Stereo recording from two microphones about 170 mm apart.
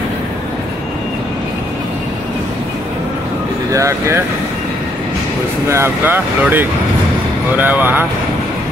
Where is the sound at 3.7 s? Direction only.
20° right (ahead or behind).